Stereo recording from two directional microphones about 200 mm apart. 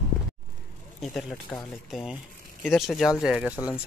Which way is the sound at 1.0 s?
Centre (ahead or behind).